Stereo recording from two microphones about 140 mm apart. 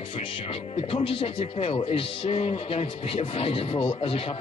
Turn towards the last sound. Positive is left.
turn(degrees=40)  # may be behind; listen again after turning